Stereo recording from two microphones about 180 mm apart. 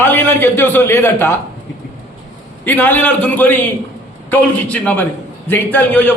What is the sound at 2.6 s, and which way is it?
A man's voice, 10° left (ahead or behind).